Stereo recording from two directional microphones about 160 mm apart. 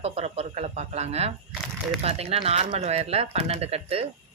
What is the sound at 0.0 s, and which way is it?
Speech, 40° right (ahead or behind).